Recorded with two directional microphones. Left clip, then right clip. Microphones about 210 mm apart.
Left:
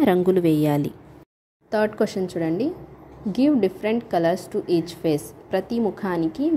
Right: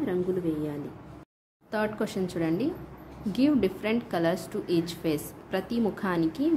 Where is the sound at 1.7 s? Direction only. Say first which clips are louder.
Left 8 dB; 25° left (ahead or behind).